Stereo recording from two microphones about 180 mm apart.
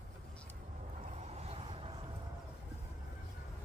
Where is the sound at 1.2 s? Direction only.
35° right (ahead or behind).